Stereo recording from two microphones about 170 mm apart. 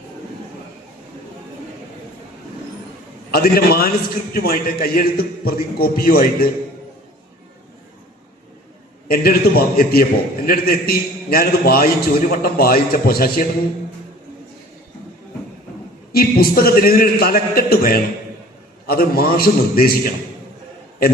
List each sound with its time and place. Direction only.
3.3 s a man's voice: 65° left (ahead or behind)
9.0 s a man's voice: 60° left (ahead or behind)
16.1 s a man's voice: 60° left (ahead or behind)